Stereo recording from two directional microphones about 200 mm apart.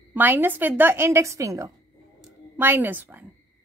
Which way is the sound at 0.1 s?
10° right (ahead or behind).